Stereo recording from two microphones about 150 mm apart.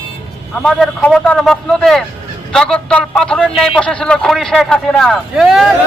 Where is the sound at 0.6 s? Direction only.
Centre (ahead or behind).